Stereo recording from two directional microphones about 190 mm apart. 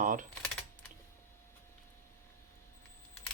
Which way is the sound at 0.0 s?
45° right (ahead or behind).